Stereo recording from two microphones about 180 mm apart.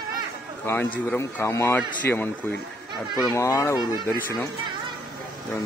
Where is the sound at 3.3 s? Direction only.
15° left (ahead or behind).